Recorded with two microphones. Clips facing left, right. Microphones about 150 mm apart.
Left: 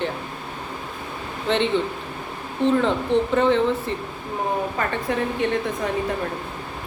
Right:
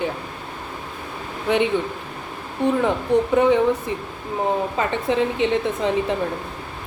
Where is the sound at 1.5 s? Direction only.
10° right (ahead or behind).